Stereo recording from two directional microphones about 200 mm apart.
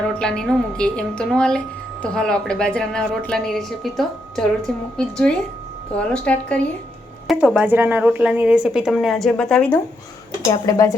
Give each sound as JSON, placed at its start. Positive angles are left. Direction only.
{"t": 0.2, "sound": "a woman's voice", "side_deg": 5}
{"t": 7.3, "sound": "a woman's voice", "side_deg": -5}
{"t": 10.5, "sound": "speech", "side_deg": 20}